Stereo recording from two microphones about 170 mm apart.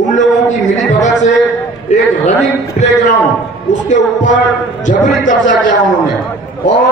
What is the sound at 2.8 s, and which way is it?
A man's voice, 50° left (ahead or behind).